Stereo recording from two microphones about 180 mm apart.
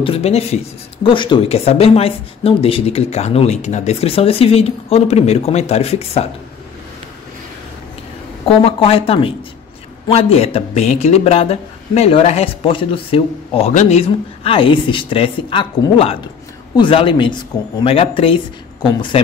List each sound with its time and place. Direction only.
0.0 s speech: 35° left (ahead or behind)
8.5 s speech: 30° left (ahead or behind)